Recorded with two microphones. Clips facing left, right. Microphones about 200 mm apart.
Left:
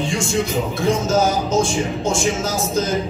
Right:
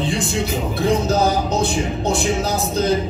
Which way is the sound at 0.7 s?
35° right (ahead or behind).